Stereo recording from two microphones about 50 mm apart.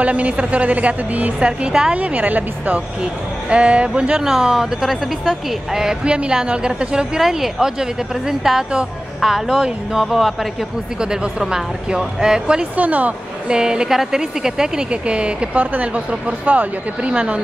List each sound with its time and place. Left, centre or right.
0.0 s a woman's voice: right
2.0 s a woman's voice: right
4.2 s a woman's voice: centre
6.0 s a woman's voice: right
7.2 s a woman's voice: centre
11.0 s a woman's voice: centre
12.7 s speech: right
13.5 s a woman's voice: centre